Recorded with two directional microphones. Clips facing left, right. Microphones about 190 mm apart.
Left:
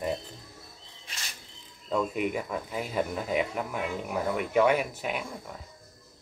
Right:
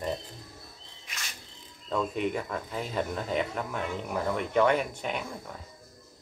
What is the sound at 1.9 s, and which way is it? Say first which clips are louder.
Speech: left 1 dB; 10° left (ahead or behind).